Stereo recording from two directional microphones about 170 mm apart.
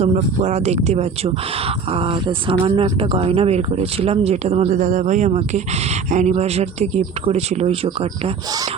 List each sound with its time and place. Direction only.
0.0 s speech: 40° right (ahead or behind)